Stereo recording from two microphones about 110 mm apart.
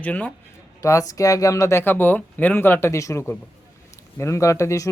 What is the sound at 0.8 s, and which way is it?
Speech, 30° left (ahead or behind).